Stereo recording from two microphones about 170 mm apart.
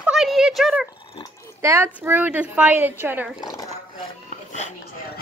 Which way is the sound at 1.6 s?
15° right (ahead or behind).